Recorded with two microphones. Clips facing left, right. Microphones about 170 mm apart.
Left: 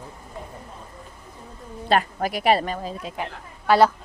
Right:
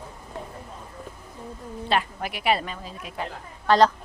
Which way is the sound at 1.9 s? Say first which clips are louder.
Left 5 dB; 45° left (ahead or behind).